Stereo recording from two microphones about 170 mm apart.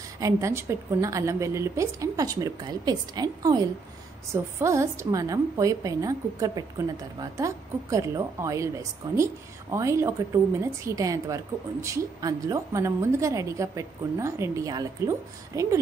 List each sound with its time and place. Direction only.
0.2 s a woman's voice: 15° right (ahead or behind)